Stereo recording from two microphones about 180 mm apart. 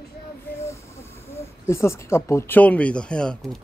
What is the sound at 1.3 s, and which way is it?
Speech, 15° left (ahead or behind).